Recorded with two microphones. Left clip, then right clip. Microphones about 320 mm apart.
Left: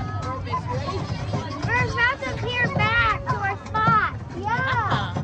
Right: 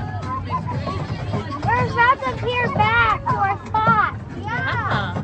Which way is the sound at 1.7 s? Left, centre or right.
Centre.